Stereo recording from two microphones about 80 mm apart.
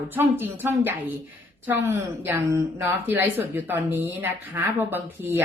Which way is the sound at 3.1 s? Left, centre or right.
Right.